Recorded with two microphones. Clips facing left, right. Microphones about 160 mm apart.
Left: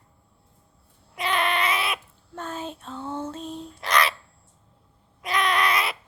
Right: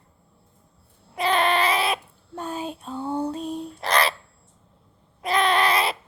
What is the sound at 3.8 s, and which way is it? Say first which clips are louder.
Owl: right 1 dB; 35° right (ahead or behind).